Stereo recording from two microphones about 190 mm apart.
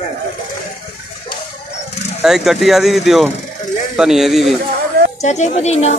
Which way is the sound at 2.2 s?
Centre (ahead or behind).